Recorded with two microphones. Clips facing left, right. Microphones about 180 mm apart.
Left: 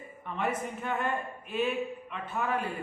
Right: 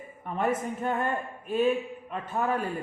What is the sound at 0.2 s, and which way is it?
A man's voice, 45° right (ahead or behind).